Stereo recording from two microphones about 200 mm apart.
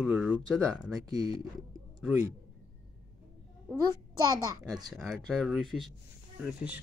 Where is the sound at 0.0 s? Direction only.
5° right (ahead or behind).